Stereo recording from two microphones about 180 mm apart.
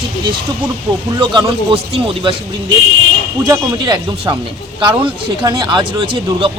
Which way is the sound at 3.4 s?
20° right (ahead or behind).